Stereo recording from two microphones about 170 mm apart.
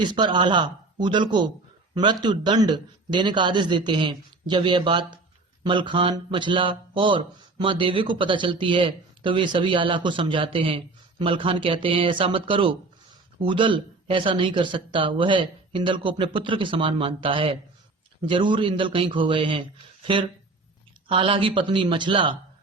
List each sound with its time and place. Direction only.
0.0 s speech: 25° right (ahead or behind)